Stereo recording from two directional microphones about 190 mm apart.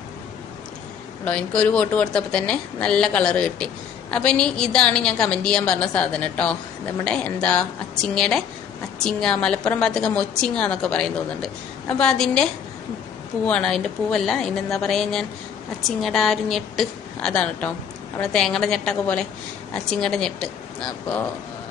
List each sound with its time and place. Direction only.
1.2 s a woman's voice: 5° left (ahead or behind)
12.0 s a woman's voice: 5° left (ahead or behind)
13.5 s a woman's voice: 5° left (ahead or behind)